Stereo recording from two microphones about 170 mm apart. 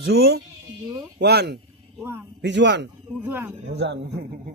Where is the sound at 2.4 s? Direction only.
90° right.